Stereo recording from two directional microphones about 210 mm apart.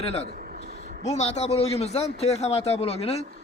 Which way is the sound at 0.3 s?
40° right (ahead or behind).